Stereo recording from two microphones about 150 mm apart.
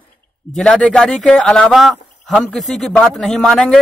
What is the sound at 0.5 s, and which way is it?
Speech, centre (ahead or behind).